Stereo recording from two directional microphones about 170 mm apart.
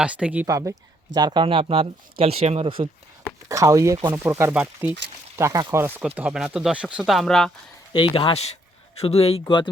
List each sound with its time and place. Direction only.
0.0 s speech: 5° right (ahead or behind)
0.4 s speech: 20° right (ahead or behind)
3.5 s speech: 20° right (ahead or behind); by 7.5 s centre (ahead or behind)
7.9 s speech: 30° left (ahead or behind)
9.4 s speech: 25° left (ahead or behind)